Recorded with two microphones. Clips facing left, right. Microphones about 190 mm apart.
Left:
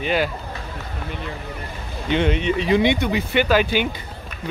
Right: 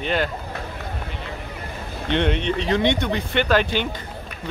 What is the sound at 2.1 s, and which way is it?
Speech, 5° left (ahead or behind).